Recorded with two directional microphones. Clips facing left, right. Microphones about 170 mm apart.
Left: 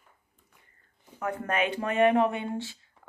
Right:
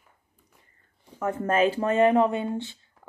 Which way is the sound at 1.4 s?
30° right (ahead or behind).